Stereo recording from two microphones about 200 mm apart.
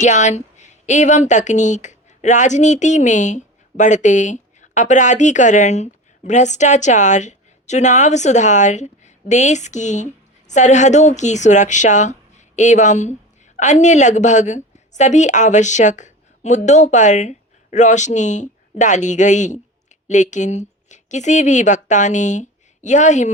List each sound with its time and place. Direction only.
0.0 s a woman's voice: 35° left (ahead or behind)